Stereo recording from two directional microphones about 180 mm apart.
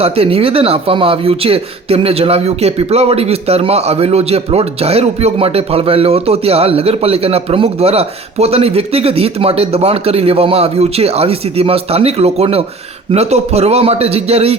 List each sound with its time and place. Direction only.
0.0 s speech: 35° right (ahead or behind)